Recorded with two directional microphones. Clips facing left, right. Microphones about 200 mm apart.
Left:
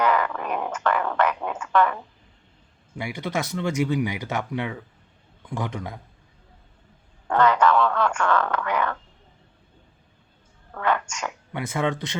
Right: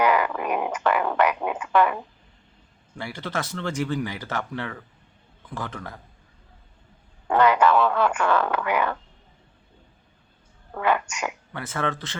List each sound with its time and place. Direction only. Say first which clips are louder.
0.0 s a sound: right 1 dB; 10° right (ahead or behind)
3.0 s speech: left 2 dB; 10° left (ahead or behind)
7.3 s speech: right 1 dB; 10° right (ahead or behind)
10.8 s speech: right 1 dB; 10° right (ahead or behind)
11.5 s speech: left 5 dB; 15° left (ahead or behind)